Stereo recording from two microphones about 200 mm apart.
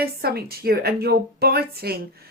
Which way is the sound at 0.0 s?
50° right (ahead or behind).